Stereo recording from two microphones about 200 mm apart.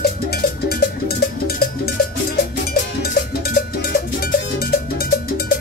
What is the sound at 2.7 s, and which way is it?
Cowbell, 50° left (ahead or behind).